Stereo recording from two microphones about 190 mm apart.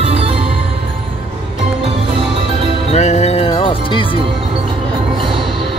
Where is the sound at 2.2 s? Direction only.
25° right (ahead or behind).